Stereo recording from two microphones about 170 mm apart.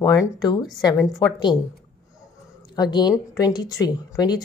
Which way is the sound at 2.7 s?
25° left (ahead or behind).